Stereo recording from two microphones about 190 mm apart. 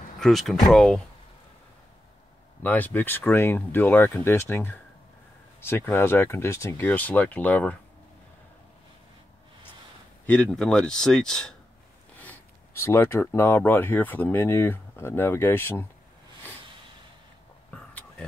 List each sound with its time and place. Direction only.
0.2 s a man's voice: centre (ahead or behind)
2.6 s speech: 10° left (ahead or behind)
10.2 s a man's voice: 5° left (ahead or behind)